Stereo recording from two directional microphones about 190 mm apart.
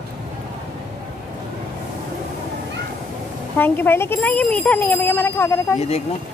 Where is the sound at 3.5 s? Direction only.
10° left (ahead or behind).